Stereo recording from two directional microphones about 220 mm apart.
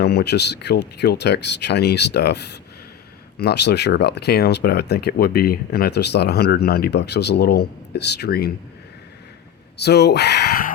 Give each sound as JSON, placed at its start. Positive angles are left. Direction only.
{"t": 0.0, "sound": "speech", "side_deg": 45}
{"t": 9.7, "sound": "speech", "side_deg": 50}